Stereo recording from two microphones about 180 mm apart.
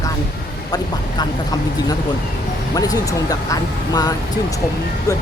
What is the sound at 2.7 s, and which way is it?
Speech, 20° left (ahead or behind).